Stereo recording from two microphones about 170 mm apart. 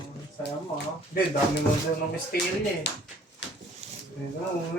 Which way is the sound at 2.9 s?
90° left.